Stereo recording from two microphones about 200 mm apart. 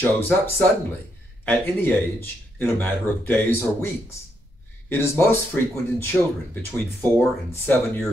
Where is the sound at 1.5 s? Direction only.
10° left (ahead or behind).